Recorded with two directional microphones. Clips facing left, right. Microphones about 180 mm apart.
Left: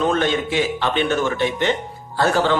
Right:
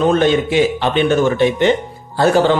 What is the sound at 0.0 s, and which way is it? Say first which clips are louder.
A man's voice: right 6 dB; 20° right (ahead or behind).